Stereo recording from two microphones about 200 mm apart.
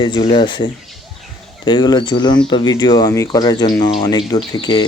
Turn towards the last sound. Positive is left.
turn(degrees=20)  # may be behind; listen again after turning